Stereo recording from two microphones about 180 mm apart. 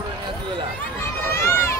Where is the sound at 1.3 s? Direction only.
15° left (ahead or behind).